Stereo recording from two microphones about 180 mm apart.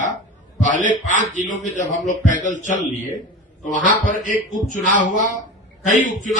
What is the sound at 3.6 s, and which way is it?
Speech, 45° left (ahead or behind).